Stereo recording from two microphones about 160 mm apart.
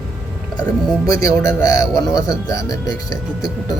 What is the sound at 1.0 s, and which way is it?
Speech, 25° left (ahead or behind).